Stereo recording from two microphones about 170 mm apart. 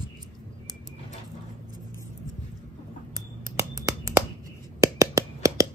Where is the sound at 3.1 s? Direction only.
20° right (ahead or behind).